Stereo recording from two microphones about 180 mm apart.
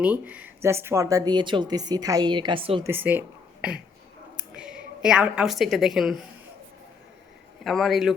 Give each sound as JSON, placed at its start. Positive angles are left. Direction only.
{"t": 0.0, "sound": "a woman's voice", "side_deg": -10}
{"t": 2.8, "sound": "a woman's voice", "side_deg": -10}
{"t": 7.6, "sound": "speech", "side_deg": 0}